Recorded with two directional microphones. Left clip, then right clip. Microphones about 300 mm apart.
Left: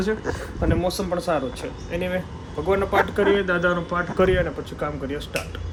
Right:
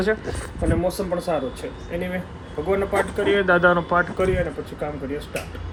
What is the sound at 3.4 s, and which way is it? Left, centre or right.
Speech, centre.